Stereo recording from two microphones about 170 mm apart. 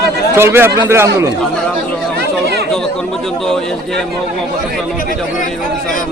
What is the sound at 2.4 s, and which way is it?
Chatter, 70° right (ahead or behind).